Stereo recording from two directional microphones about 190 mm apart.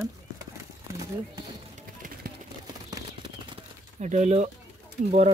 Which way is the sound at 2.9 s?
25° right (ahead or behind).